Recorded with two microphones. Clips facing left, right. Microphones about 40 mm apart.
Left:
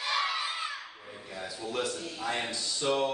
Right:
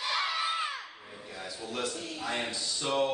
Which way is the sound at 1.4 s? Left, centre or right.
Centre.